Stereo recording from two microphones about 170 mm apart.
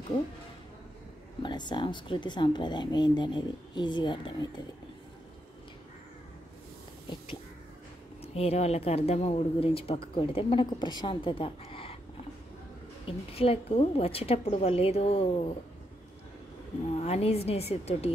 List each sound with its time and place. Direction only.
1.4 s speech: 25° left (ahead or behind)
8.2 s speech: 35° left (ahead or behind)
13.0 s speech: 35° left (ahead or behind)
17.0 s speech: 40° left (ahead or behind)